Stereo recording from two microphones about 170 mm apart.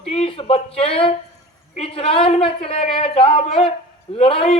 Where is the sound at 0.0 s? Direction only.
35° left (ahead or behind).